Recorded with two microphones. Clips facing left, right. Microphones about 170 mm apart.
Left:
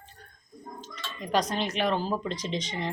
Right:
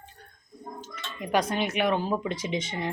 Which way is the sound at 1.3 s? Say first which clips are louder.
Right 1 dB; 5° right (ahead or behind).